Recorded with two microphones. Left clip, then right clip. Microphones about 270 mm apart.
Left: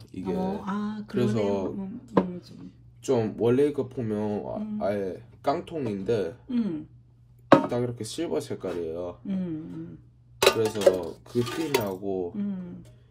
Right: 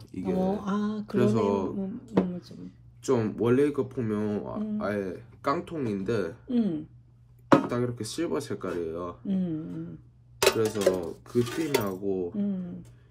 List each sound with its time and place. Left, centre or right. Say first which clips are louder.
0.1 s mantra: right 2 dB; centre